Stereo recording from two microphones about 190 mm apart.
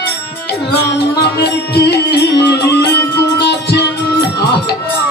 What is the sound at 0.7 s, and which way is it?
Music, 60° left (ahead or behind).